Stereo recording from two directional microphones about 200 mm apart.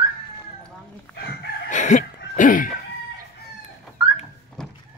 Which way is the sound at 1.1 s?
55° left (ahead or behind).